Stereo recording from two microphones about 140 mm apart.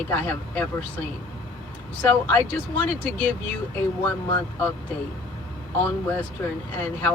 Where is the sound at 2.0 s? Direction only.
10° left (ahead or behind).